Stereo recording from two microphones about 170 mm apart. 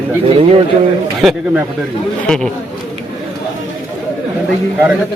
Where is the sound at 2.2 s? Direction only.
5° left (ahead or behind).